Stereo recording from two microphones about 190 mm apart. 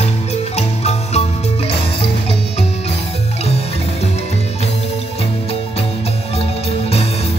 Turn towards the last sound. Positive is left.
turn(degrees=30)  # may be behind; listen again after turning